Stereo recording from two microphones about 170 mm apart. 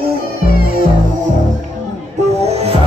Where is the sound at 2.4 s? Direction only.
35° right (ahead or behind).